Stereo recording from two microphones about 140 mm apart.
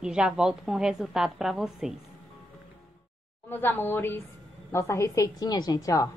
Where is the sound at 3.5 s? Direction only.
15° left (ahead or behind).